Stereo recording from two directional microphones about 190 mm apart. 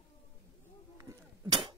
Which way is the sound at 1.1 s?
15° right (ahead or behind).